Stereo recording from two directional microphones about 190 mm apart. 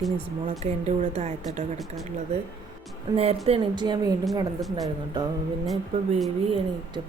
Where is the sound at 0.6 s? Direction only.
35° right (ahead or behind).